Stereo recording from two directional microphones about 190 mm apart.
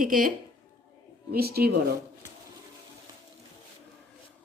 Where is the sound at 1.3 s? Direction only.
55° right (ahead or behind).